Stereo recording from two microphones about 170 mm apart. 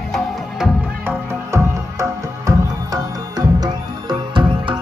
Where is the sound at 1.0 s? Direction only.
15° right (ahead or behind).